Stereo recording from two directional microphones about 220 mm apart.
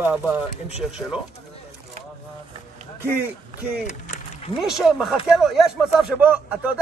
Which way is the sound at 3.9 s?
35° left (ahead or behind).